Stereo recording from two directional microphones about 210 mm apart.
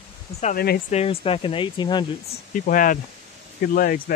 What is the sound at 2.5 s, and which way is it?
Speech, 40° left (ahead or behind).